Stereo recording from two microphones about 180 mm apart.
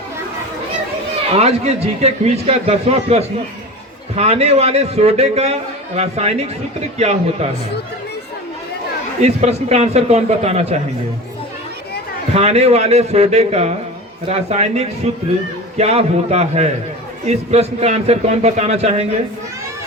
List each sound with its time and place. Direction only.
1.3 s a man's voice: 35° right (ahead or behind)
9.2 s a man's voice: 35° right (ahead or behind)
12.3 s a man's voice: 35° right (ahead or behind)